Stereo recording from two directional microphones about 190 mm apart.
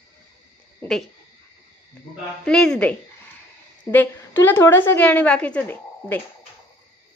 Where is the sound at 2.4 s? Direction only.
5° left (ahead or behind).